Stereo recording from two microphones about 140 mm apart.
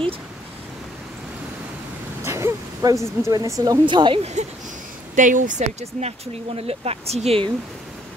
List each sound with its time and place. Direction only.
2.2 s a sound: 20° right (ahead or behind)
3.3 s speech: 25° right (ahead or behind)
4.2 s speech: 55° right (ahead or behind)
5.1 s speech: 65° right (ahead or behind); by 7.5 s 45° right (ahead or behind)